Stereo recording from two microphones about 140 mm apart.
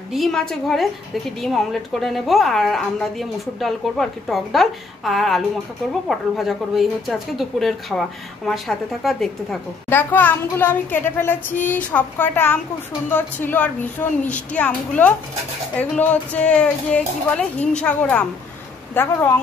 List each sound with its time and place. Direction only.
0.1 s a woman's voice: centre (ahead or behind)
9.8 s speech: 15° left (ahead or behind)